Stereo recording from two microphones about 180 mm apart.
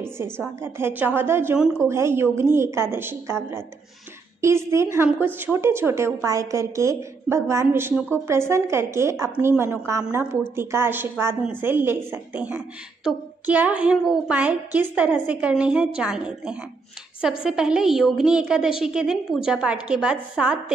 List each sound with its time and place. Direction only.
0.6 s a woman's voice: 15° right (ahead or behind)
7.9 s speech: 5° left (ahead or behind)
8.3 s a woman's voice: 15° right (ahead or behind)